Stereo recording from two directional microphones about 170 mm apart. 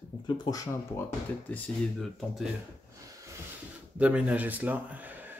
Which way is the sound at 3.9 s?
10° right (ahead or behind).